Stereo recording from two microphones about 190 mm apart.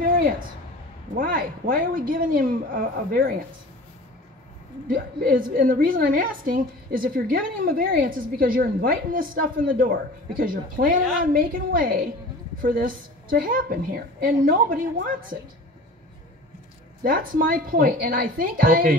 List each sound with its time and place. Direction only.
0.0 s a sound: 45° right (ahead or behind)
1.1 s a woman's voice: 50° right (ahead or behind)
4.8 s a woman's voice: 45° right (ahead or behind)
17.0 s a woman's voice: 50° right (ahead or behind)